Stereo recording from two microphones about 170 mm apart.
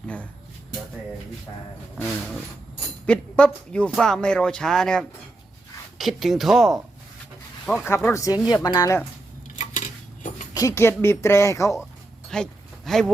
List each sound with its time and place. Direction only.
3.1 s speech: 5° left (ahead or behind)
9.6 s cutlery: 45° left (ahead or behind)
10.5 s speech: 20° left (ahead or behind)
12.3 s a sound: 5° left (ahead or behind)